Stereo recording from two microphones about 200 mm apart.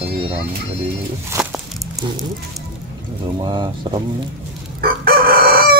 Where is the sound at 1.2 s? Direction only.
15° right (ahead or behind).